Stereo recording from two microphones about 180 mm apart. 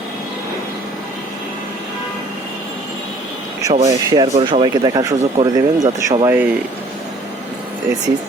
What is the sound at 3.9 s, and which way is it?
Speech, 20° right (ahead or behind).